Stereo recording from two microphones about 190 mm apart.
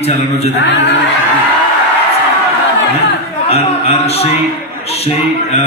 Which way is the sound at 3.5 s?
35° left (ahead or behind).